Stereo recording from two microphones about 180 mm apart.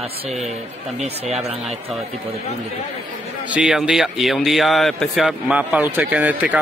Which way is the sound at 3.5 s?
5° right (ahead or behind).